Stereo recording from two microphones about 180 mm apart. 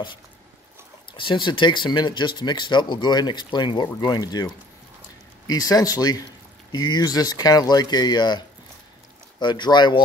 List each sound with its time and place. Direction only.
1.1 s speech: 25° left (ahead or behind)